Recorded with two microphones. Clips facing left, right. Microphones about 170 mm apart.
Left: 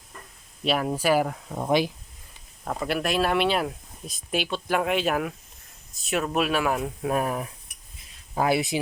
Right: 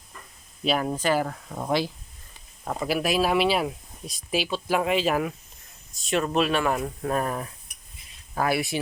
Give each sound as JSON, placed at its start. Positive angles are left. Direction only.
{"t": 0.6, "sound": "speech", "side_deg": 0}
{"t": 2.6, "sound": "speech", "side_deg": -5}
{"t": 8.4, "sound": "speech", "side_deg": 20}